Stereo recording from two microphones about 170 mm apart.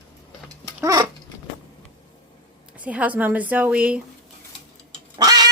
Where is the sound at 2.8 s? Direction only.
10° right (ahead or behind).